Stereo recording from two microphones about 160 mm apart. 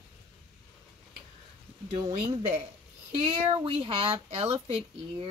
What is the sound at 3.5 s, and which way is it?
Speech, 35° right (ahead or behind).